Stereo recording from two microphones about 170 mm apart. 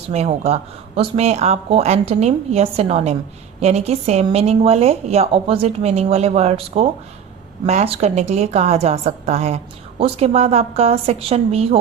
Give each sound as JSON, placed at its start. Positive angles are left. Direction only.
{"t": 0.1, "sound": "a woman's voice", "side_deg": -40}